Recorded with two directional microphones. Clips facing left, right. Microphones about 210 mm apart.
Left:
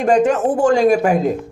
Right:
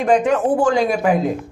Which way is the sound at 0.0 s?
45° left (ahead or behind).